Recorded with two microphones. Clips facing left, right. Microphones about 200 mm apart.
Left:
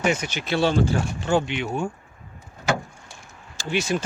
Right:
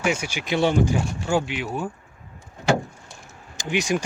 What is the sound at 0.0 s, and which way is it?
Speech, 10° right (ahead or behind).